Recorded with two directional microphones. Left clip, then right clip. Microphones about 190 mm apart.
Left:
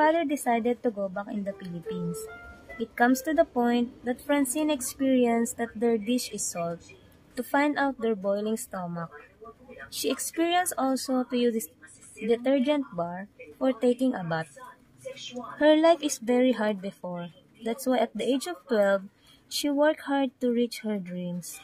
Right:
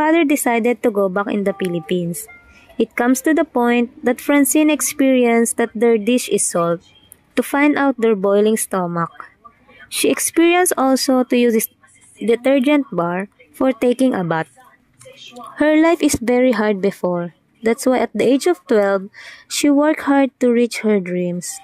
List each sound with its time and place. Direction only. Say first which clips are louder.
0.0 s a woman's voice: right 9 dB; 45° right (ahead or behind)
2.8 s a woman's voice: right 8 dB; 45° right (ahead or behind)